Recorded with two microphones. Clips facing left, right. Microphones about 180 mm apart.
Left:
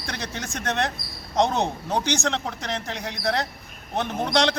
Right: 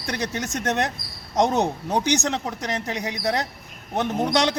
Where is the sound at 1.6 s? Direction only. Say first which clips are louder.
Right 2 dB; 15° right (ahead or behind).